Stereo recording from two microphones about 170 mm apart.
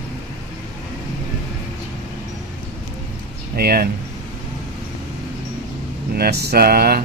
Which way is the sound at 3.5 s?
60° right (ahead or behind).